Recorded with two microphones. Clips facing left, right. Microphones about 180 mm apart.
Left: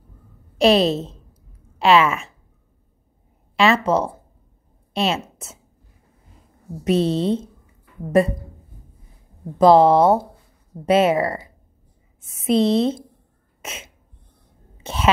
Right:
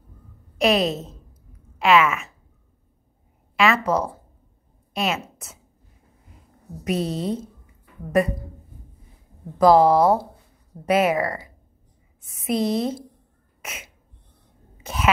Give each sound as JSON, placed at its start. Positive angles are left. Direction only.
{"t": 0.6, "sound": "speech", "side_deg": 30}
{"t": 3.5, "sound": "a woman's voice", "side_deg": 30}
{"t": 6.8, "sound": "a woman's voice", "side_deg": 25}
{"t": 9.6, "sound": "a woman's voice", "side_deg": 25}
{"t": 13.6, "sound": "throat clearing", "side_deg": 25}
{"t": 14.8, "sound": "a sound", "side_deg": 30}